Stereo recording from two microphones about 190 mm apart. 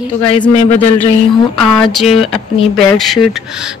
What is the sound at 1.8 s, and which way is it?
Speech, centre (ahead or behind).